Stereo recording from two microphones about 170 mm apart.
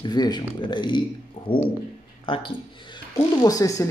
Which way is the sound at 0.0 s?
25° left (ahead or behind).